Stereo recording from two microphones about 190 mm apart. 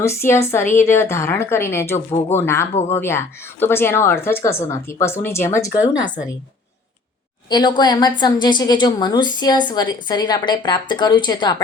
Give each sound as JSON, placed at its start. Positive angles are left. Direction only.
{"t": 0.0, "sound": "speech", "side_deg": 15}
{"t": 7.5, "sound": "a woman's voice", "side_deg": 20}